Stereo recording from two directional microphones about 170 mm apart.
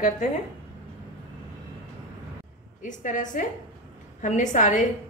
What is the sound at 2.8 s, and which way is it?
A woman's voice, 50° left (ahead or behind).